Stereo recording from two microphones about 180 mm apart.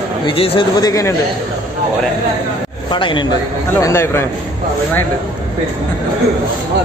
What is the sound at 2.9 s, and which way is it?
Speech, 25° left (ahead or behind).